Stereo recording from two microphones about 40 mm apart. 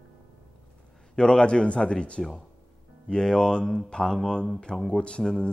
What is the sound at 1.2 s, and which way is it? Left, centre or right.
Speech, left.